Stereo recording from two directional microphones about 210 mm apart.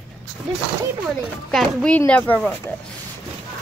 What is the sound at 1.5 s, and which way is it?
Speech, centre (ahead or behind).